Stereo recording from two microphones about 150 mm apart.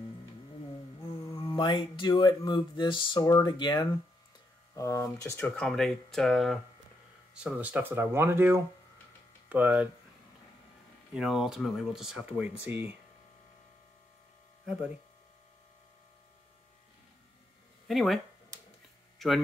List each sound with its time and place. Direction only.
1.3 s speech: 35° left (ahead or behind); by 5.5 s 20° left (ahead or behind)
5.6 s speech: 5° left (ahead or behind)
7.3 s speech: 10° right (ahead or behind)
11.1 s speech: 5° right (ahead or behind)
17.8 s speech: centre (ahead or behind)
19.1 s a sound: centre (ahead or behind)